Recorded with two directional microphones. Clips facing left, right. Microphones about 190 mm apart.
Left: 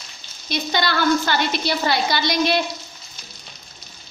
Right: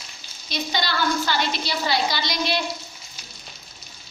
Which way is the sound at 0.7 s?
55° left (ahead or behind).